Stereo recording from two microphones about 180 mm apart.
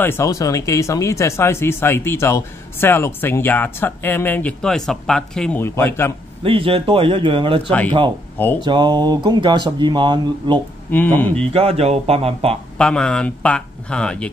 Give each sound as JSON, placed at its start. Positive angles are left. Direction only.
{"t": 0.0, "sound": "speech", "side_deg": 15}
{"t": 6.4, "sound": "speech", "side_deg": -30}
{"t": 10.9, "sound": "speech", "side_deg": 10}
{"t": 11.5, "sound": "speech", "side_deg": -35}
{"t": 12.7, "sound": "speech", "side_deg": 5}